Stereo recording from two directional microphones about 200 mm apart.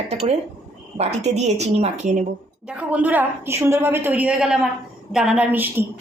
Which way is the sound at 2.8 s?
5° right (ahead or behind).